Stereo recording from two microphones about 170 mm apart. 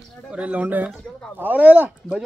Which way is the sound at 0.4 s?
10° right (ahead or behind).